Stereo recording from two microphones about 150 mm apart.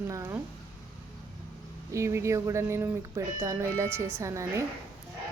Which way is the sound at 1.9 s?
20° right (ahead or behind).